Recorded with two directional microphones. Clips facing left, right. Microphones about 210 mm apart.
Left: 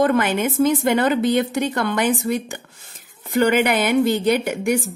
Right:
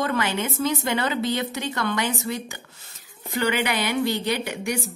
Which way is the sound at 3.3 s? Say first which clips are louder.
Left 7 dB; 50° left (ahead or behind).